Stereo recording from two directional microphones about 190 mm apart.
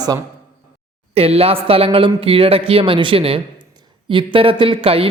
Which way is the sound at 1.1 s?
30° right (ahead or behind).